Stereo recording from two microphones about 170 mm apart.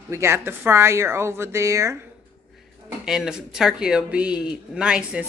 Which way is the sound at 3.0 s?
5° right (ahead or behind).